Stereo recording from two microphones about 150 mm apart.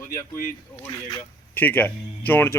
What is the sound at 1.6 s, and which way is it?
Speech, 10° left (ahead or behind).